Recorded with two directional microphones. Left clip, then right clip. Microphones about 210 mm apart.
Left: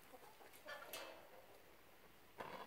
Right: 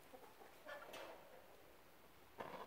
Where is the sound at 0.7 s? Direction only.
25° left (ahead or behind).